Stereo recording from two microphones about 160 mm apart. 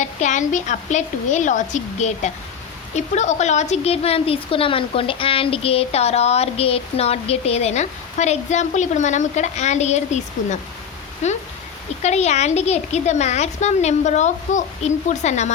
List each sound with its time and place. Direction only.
0.0 s a woman's voice: 50° left (ahead or behind)